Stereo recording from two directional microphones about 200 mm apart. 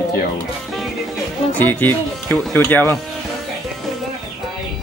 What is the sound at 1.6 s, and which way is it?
Speech, 10° left (ahead or behind).